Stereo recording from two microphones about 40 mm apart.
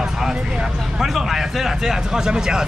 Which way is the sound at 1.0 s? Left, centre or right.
Centre.